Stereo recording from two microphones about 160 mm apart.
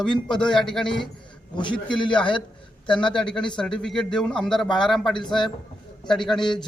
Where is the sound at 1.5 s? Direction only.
30° left (ahead or behind).